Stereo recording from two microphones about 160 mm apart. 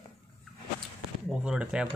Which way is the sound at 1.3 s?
5° right (ahead or behind).